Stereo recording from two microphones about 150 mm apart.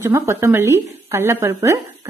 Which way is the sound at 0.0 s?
20° right (ahead or behind).